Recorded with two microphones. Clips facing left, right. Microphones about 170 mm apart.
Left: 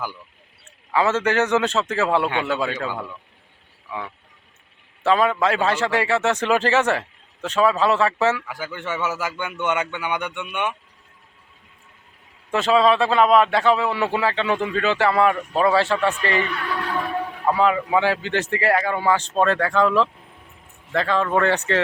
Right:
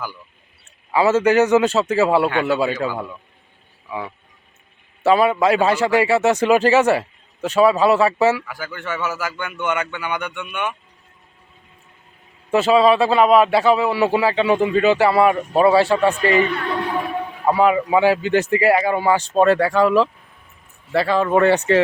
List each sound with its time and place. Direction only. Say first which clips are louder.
0.9 s a man's voice: right 5 dB; 10° right (ahead or behind)
8.4 s speech: right 1 dB; 20° left (ahead or behind)
12.5 s a man's voice: right 3 dB; 5° right (ahead or behind)